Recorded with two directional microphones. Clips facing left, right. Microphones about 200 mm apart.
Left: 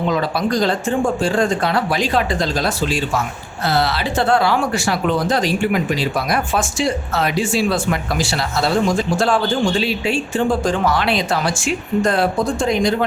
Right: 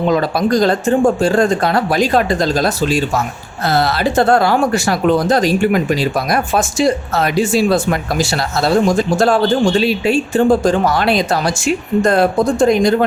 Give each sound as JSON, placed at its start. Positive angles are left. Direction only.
{"t": 0.1, "sound": "speech", "side_deg": -45}